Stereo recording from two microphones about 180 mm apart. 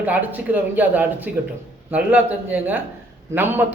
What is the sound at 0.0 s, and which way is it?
A man's voice, 10° right (ahead or behind).